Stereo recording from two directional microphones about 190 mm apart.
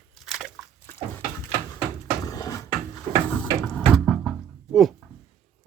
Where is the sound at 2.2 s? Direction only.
20° left (ahead or behind); by 4.9 s centre (ahead or behind).